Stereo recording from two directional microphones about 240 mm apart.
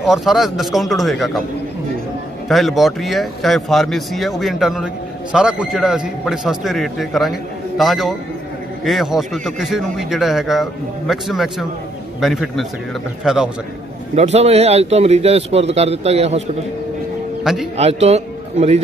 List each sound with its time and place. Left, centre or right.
0.0 s speech: centre
2.4 s speech: centre
14.1 s a man's voice: right
17.4 s a sound: centre
17.7 s a man's voice: right